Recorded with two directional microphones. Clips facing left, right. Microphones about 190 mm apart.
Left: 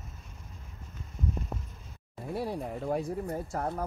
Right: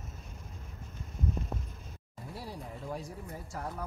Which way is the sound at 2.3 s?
60° left (ahead or behind).